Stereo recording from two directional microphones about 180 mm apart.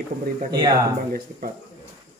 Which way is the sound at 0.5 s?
20° right (ahead or behind).